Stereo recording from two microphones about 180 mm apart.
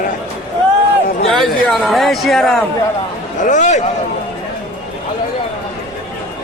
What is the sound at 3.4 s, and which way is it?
Speech, 40° left (ahead or behind).